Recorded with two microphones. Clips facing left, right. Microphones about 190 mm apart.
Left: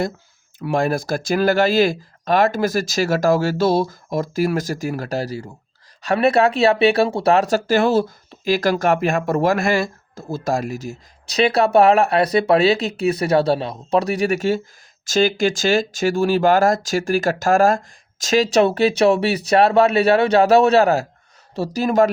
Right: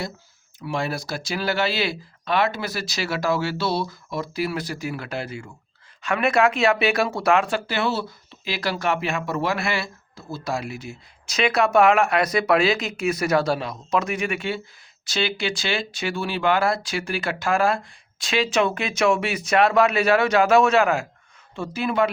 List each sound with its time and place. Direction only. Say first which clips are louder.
0.6 s speech: left 7 dB; 50° left (ahead or behind)